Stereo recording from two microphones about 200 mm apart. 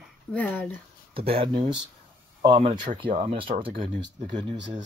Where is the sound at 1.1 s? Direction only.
25° right (ahead or behind).